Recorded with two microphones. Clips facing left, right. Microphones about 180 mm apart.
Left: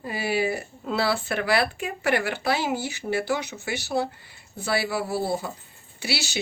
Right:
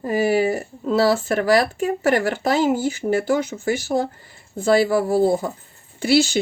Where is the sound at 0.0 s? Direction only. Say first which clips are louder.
Right 7 dB; 45° right (ahead or behind).